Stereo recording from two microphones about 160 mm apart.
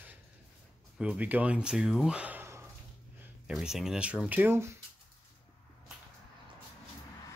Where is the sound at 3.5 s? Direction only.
5° right (ahead or behind).